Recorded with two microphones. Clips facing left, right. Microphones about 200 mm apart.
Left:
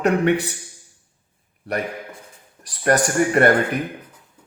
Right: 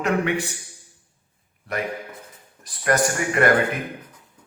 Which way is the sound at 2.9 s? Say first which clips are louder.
Left 4 dB; 35° left (ahead or behind).